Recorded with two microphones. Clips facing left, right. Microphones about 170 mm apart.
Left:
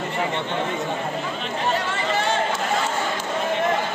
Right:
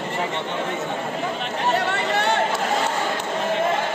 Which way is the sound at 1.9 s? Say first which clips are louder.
Right 1 dB; 65° right (ahead or behind).